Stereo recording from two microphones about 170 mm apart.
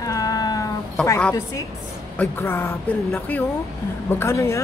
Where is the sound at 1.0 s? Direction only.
5° left (ahead or behind).